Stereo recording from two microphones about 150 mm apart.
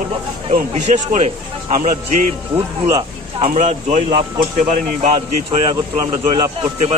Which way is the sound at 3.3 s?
45° right (ahead or behind).